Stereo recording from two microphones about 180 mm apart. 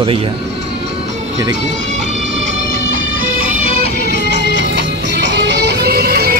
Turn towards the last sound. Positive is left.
turn(degrees=-55)  # may be behind; listen again after turning